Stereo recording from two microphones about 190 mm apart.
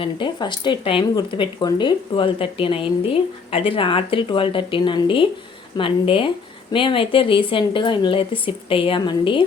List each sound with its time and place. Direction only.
0.0 s speech: 25° left (ahead or behind)